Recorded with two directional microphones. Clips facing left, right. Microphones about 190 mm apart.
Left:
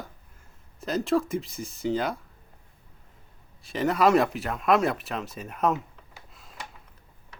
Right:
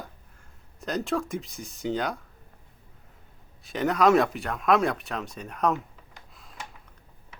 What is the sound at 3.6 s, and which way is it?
Speech, centre (ahead or behind).